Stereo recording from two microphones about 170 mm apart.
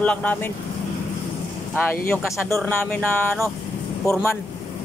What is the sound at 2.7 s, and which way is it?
Speech, 10° left (ahead or behind).